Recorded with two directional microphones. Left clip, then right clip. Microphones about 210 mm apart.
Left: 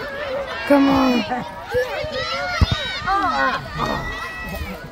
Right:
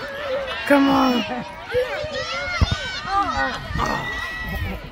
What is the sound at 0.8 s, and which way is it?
Speech, 35° left (ahead or behind).